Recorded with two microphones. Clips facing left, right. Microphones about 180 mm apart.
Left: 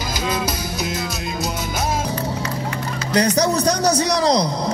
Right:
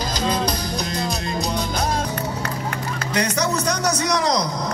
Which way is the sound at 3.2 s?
35° left (ahead or behind).